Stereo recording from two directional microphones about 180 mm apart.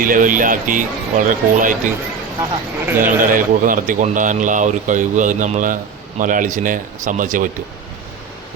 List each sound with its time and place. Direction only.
0.0 s speech: 50° right (ahead or behind)
2.4 s speech: 10° right (ahead or behind)
3.2 s speech: 50° right (ahead or behind)